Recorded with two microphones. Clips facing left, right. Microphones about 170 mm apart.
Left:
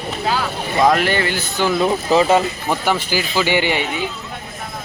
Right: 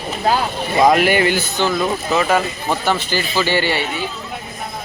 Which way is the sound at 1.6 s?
15° left (ahead or behind).